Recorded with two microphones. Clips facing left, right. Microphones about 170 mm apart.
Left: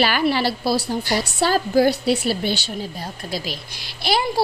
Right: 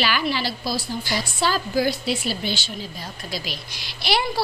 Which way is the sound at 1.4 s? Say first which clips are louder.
Left 4 dB; 50° left (ahead or behind).